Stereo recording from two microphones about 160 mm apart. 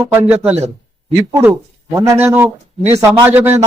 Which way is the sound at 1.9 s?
15° right (ahead or behind).